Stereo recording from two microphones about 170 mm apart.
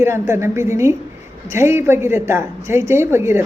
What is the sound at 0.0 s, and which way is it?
A woman's voice, 15° right (ahead or behind).